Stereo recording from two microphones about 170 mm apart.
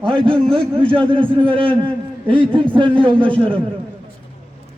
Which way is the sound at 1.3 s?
30° right (ahead or behind).